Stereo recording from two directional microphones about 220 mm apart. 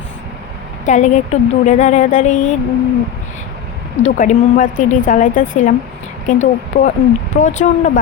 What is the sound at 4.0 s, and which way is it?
A woman's voice, 35° left (ahead or behind).